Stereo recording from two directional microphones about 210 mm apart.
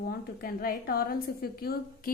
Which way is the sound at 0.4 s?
45° left (ahead or behind).